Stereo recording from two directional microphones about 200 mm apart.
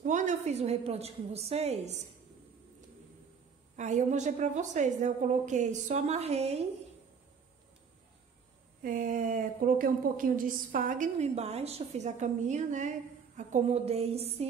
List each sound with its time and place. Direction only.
0.0 s a woman's voice: 40° right (ahead or behind)
3.7 s a woman's voice: 35° right (ahead or behind)
8.8 s a woman's voice: 40° right (ahead or behind)